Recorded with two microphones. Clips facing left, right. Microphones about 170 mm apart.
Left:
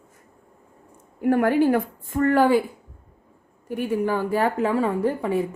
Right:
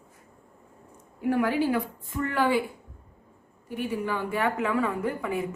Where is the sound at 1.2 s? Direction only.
50° left (ahead or behind).